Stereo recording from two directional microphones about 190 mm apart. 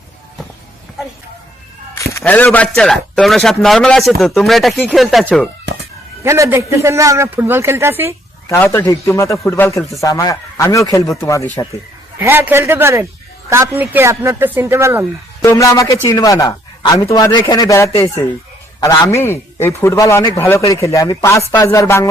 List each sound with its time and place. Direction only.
2.1 s speech: 10° left (ahead or behind)
6.2 s speech: 15° right (ahead or behind)
8.4 s a man's voice: 10° left (ahead or behind)
12.2 s speech: 10° right (ahead or behind)
15.4 s a man's voice: 15° left (ahead or behind)